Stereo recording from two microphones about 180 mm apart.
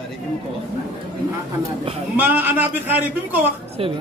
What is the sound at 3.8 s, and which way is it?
Speech, 30° right (ahead or behind).